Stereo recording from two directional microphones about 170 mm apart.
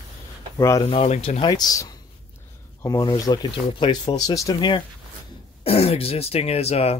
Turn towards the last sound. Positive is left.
turn(degrees=40)  # may be behind; listen again after turning